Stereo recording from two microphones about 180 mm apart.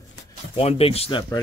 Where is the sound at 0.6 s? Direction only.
35° left (ahead or behind).